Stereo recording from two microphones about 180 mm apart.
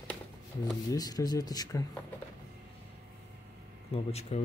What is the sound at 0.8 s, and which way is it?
Speech, 20° left (ahead or behind).